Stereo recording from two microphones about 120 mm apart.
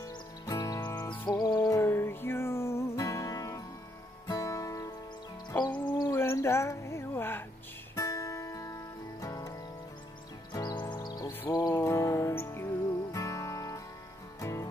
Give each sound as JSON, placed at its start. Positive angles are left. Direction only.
{"t": 0.5, "sound": "music", "side_deg": 30}
{"t": 1.6, "sound": "music", "side_deg": 20}
{"t": 5.7, "sound": "music", "side_deg": 40}
{"t": 6.0, "sound": "a sound", "side_deg": 25}
{"t": 7.9, "sound": "music", "side_deg": 25}
{"t": 11.7, "sound": "music", "side_deg": 25}